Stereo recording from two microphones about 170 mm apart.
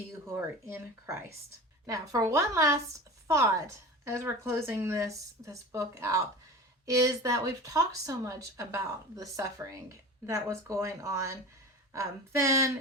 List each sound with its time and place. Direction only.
0.3 s speech: 15° right (ahead or behind)